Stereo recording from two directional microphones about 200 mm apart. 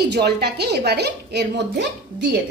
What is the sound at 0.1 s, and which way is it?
A woman's voice, 55° right (ahead or behind).